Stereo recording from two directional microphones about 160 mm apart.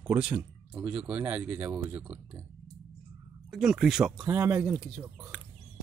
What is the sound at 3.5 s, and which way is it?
Speech, 5° right (ahead or behind).